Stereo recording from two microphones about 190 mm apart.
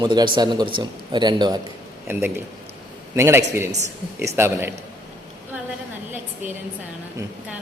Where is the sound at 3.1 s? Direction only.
15° right (ahead or behind).